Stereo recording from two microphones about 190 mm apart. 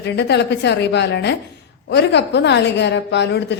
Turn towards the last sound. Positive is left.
turn(degrees=65)  # may be behind; listen again after turning